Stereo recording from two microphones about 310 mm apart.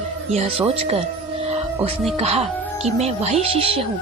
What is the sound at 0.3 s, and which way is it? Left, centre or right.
Speech, centre.